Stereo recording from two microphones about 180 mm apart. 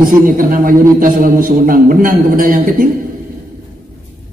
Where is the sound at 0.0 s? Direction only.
50° right (ahead or behind).